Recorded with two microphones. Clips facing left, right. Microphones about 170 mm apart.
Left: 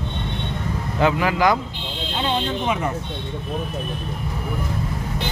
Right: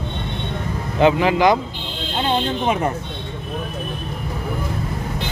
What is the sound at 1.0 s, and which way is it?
Speech, 20° right (ahead or behind).